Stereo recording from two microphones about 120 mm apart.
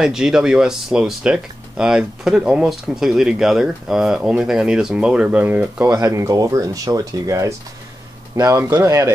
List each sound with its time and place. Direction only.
0.0 s speech: 5° right (ahead or behind)
5.9 s speech: 25° right (ahead or behind)